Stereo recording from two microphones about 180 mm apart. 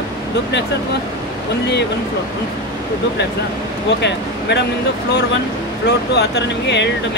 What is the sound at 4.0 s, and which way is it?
Speech, 70° left (ahead or behind).